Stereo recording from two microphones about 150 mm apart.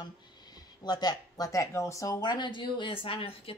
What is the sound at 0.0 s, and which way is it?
Speech, 30° left (ahead or behind).